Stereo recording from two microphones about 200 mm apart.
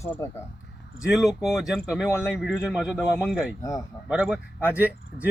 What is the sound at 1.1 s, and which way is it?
Speech, centre (ahead or behind).